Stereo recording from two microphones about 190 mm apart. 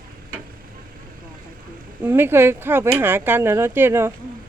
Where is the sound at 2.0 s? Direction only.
10° right (ahead or behind).